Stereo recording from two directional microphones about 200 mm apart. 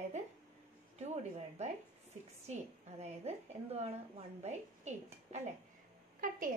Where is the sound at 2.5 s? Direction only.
35° right (ahead or behind).